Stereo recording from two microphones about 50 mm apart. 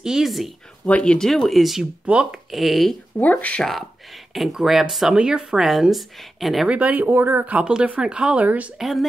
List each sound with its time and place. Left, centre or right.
0.0 s speech: centre
0.8 s speech: left
1.2 s a woman's voice: centre
2.0 s speech: right
2.5 s a woman's voice: centre
3.2 s speech: left
4.3 s a woman's voice: centre
5.1 s speech: centre
5.6 s a woman's voice: centre
6.7 s speech: right
7.4 s speech: right
8.5 s speech: right
8.7 s a woman's voice: centre